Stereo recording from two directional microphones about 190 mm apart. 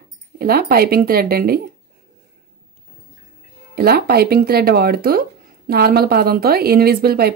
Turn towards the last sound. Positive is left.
turn(degrees=-55)  # may be behind; listen again after turning